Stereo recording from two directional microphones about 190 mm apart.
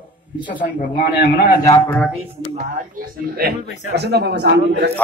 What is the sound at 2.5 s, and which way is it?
Speech, 55° right (ahead or behind).